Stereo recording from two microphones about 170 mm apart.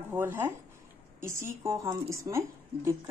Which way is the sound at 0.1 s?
15° right (ahead or behind).